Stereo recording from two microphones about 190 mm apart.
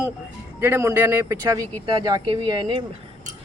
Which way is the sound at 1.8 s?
25° right (ahead or behind).